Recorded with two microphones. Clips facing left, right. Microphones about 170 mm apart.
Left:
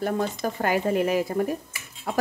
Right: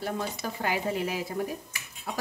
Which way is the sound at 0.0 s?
50° left (ahead or behind).